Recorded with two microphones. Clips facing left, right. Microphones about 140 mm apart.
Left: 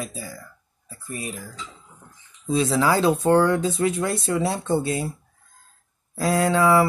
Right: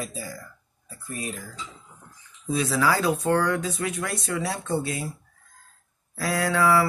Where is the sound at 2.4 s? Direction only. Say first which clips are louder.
Left 3 dB; 25° left (ahead or behind).